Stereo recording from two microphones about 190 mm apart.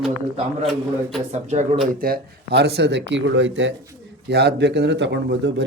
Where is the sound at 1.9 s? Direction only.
50° right (ahead or behind); by 3.7 s 75° right (ahead or behind).